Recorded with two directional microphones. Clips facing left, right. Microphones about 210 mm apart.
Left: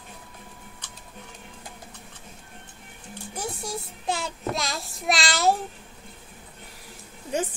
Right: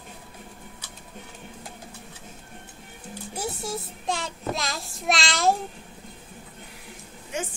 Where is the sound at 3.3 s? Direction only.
Centre (ahead or behind).